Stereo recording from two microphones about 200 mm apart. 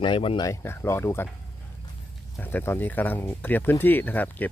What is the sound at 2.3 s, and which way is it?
Speech, 10° left (ahead or behind).